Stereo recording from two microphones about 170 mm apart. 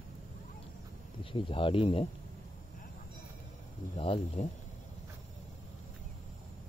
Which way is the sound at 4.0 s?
35° left (ahead or behind).